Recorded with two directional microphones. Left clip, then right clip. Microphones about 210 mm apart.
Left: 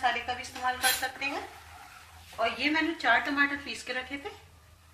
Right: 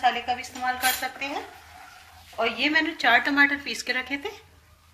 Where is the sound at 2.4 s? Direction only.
55° right (ahead or behind).